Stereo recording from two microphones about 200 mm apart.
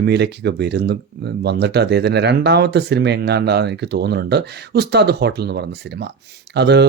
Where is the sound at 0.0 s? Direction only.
55° right (ahead or behind).